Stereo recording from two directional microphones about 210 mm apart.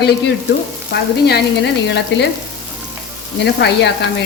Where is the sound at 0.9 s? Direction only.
50° left (ahead or behind).